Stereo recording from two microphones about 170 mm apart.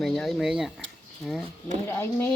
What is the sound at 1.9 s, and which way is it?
Speech, 15° left (ahead or behind).